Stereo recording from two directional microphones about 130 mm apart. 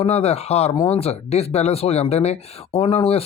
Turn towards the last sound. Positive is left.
turn(degrees=50)  # may be behind; listen again after turning